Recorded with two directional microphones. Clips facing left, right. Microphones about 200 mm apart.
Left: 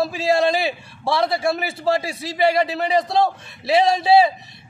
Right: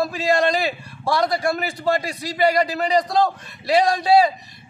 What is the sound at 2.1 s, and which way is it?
Speech, 25° left (ahead or behind).